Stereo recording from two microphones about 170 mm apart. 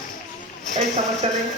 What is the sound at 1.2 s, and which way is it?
Speech, 35° right (ahead or behind).